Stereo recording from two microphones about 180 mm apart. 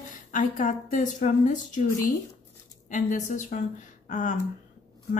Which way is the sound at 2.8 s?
45° left (ahead or behind).